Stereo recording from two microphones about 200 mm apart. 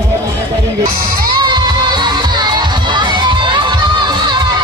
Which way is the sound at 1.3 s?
20° right (ahead or behind).